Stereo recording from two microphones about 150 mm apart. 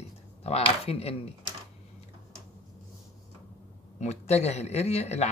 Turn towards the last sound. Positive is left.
turn(degrees=45)  # may be behind; listen again after turning